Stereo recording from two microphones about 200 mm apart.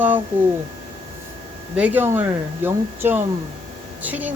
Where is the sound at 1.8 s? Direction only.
10° right (ahead or behind).